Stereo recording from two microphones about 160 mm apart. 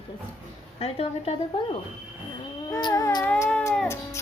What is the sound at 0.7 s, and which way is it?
Speech, 40° left (ahead or behind).